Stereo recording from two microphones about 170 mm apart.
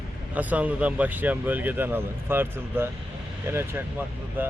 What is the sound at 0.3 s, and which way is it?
Speech, 10° right (ahead or behind).